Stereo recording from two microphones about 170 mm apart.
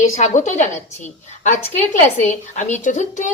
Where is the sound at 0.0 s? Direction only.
45° left (ahead or behind).